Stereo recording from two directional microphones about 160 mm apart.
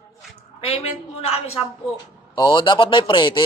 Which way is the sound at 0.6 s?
40° left (ahead or behind).